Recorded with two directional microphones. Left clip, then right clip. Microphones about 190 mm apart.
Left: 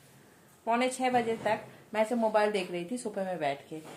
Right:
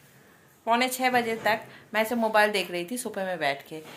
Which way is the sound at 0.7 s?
10° right (ahead or behind).